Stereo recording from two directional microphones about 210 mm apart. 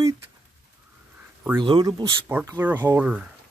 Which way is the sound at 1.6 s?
20° right (ahead or behind).